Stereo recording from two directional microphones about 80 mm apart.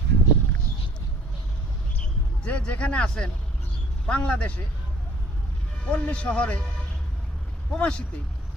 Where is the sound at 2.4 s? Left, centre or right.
Centre.